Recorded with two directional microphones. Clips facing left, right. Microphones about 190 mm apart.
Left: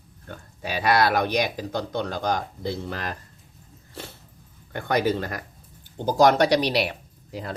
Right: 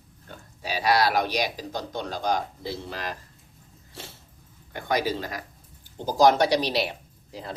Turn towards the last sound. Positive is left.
turn(degrees=65)  # may be behind; listen again after turning